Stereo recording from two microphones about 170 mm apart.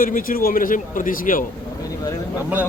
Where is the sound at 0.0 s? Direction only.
55° left (ahead or behind).